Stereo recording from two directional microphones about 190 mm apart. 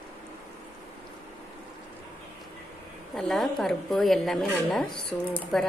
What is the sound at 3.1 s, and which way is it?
A woman's voice, centre (ahead or behind).